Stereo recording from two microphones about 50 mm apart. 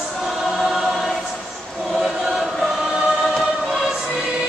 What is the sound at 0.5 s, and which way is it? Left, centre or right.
Choir, centre.